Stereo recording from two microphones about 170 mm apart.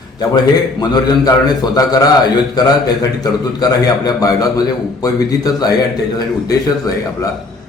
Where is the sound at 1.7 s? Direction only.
25° left (ahead or behind).